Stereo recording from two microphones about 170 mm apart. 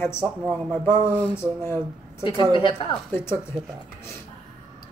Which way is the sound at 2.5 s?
30° left (ahead or behind).